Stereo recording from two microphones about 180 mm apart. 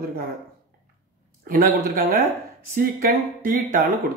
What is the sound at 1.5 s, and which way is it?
Speech, 55° right (ahead or behind).